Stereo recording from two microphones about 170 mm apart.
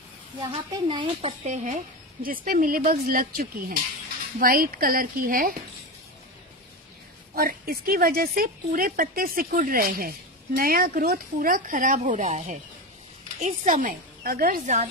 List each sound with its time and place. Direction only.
0.4 s a woman's voice: 30° right (ahead or behind)
2.2 s speech: 55° right (ahead or behind)
7.3 s speech: 60° right (ahead or behind)